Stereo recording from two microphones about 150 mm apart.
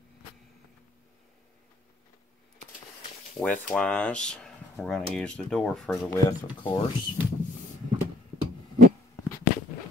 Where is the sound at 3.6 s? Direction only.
5° left (ahead or behind).